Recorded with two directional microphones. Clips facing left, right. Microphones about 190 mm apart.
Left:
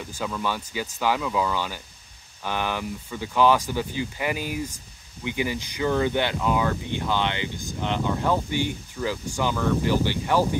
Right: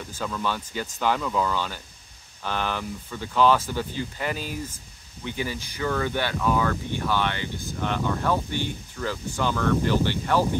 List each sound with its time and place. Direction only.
0.1 s speech: 10° left (ahead or behind)